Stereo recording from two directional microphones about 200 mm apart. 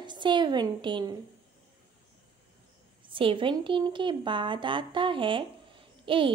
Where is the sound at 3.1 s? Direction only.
25° right (ahead or behind).